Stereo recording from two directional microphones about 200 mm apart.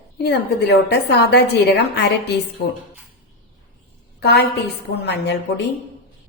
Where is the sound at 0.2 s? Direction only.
55° left (ahead or behind).